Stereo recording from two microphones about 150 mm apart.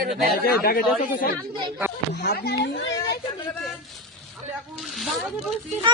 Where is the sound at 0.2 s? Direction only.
85° left.